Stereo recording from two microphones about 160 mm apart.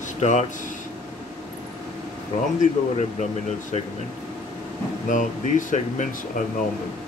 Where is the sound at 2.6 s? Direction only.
50° left (ahead or behind).